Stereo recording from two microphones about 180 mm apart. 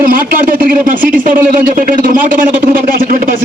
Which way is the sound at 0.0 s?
50° right (ahead or behind).